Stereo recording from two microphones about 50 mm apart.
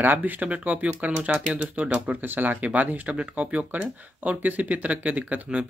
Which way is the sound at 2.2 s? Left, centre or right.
Right.